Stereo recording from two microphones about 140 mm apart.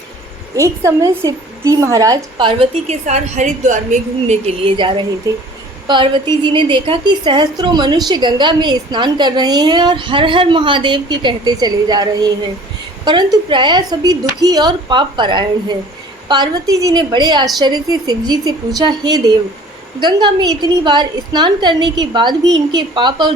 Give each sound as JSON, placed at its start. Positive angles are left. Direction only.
{"t": 0.5, "sound": "a woman's voice", "side_deg": -20}
{"t": 2.4, "sound": "a woman's voice", "side_deg": -35}
{"t": 2.8, "sound": "a woman's voice", "side_deg": -55}
{"t": 5.3, "sound": "a woman's voice", "side_deg": -25}
{"t": 5.9, "sound": "a woman's voice", "side_deg": -35}